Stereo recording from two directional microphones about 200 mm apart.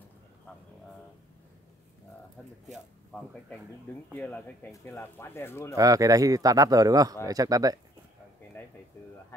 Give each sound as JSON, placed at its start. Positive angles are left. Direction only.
{"t": 3.1, "sound": "speech", "side_deg": 5}
{"t": 5.8, "sound": "speech", "side_deg": -15}